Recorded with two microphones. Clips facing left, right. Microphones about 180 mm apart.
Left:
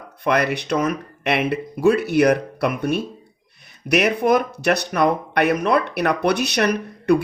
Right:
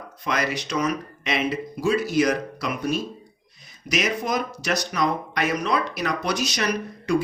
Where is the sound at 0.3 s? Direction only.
60° left (ahead or behind).